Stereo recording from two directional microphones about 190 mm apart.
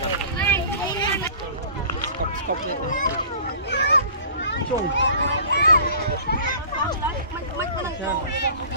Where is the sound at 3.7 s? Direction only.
70° left (ahead or behind).